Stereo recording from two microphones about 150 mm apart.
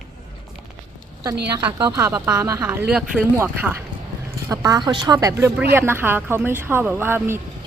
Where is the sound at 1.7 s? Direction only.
30° right (ahead or behind).